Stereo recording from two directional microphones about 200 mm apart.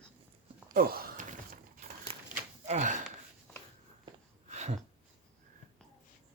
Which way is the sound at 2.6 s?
35° right (ahead or behind).